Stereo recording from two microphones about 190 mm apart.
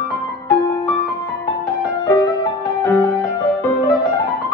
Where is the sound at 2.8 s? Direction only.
20° left (ahead or behind).